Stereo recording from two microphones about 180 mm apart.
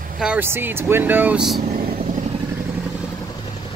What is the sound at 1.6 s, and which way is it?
Vehicle, 50° right (ahead or behind).